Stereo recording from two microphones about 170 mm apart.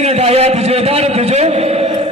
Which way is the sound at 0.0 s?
35° right (ahead or behind).